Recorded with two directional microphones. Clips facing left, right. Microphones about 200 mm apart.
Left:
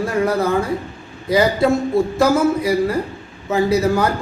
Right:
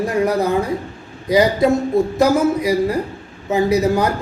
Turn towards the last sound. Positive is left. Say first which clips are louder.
# even
turn(degrees=-15)  # may be behind; listen again after turning